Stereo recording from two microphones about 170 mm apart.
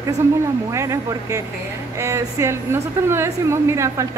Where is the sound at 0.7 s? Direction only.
20° right (ahead or behind).